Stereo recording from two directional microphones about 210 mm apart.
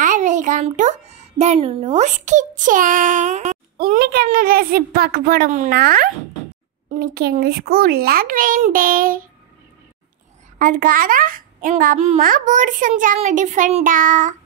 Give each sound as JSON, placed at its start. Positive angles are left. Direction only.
{"t": 0.0, "sound": "a child's voice", "side_deg": -35}
{"t": 10.6, "sound": "a child's voice", "side_deg": -40}